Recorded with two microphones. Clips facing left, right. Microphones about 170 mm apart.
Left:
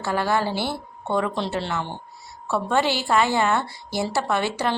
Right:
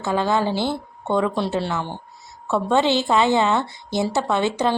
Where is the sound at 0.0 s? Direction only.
20° right (ahead or behind).